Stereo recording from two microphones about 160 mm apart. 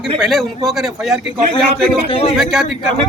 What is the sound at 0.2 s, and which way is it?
A man's voice, centre (ahead or behind).